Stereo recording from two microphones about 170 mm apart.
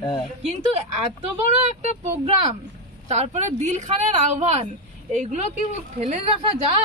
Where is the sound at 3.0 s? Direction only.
40° right (ahead or behind).